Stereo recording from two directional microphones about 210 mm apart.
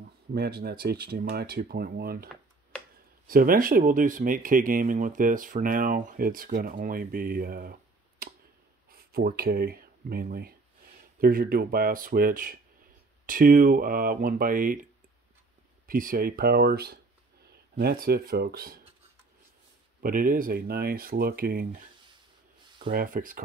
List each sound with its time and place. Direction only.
0.3 s speech: 45° right (ahead or behind)
3.3 s speech: 45° right (ahead or behind)
8.2 s tick: 45° right (ahead or behind)
8.9 s speech: 45° right (ahead or behind)
15.9 s speech: 45° right (ahead or behind)
20.0 s speech: 40° right (ahead or behind)
22.8 s speech: 40° right (ahead or behind)